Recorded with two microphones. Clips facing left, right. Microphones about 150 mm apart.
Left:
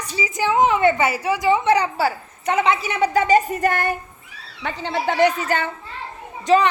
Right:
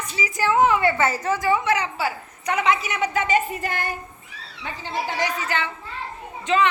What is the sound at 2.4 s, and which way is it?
A woman's voice, 25° left (ahead or behind).